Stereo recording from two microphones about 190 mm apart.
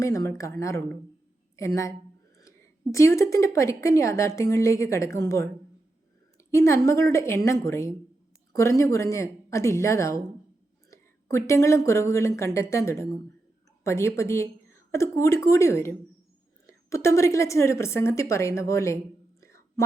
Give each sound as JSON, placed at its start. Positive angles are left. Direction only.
{"t": 0.0, "sound": "a woman's voice", "side_deg": 15}
{"t": 1.5, "sound": "a woman's voice", "side_deg": 15}
{"t": 2.9, "sound": "a woman's voice", "side_deg": 15}
{"t": 6.3, "sound": "a sound", "side_deg": 15}
{"t": 6.8, "sound": "a woman's voice", "side_deg": 15}
{"t": 19.4, "sound": "whispering", "side_deg": 15}